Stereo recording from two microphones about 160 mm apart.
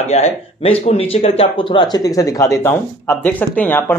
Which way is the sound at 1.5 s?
30° left (ahead or behind).